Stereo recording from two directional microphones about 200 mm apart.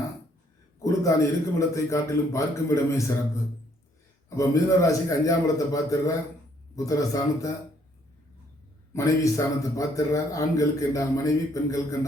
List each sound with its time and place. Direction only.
0.8 s a sound: 15° left (ahead or behind)
1.5 s a man's voice: 15° left (ahead or behind)
4.4 s a man's voice: 15° left (ahead or behind)
8.9 s a man's voice: 15° left (ahead or behind)